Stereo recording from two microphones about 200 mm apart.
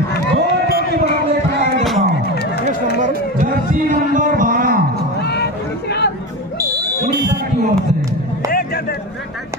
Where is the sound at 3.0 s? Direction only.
40° right (ahead or behind).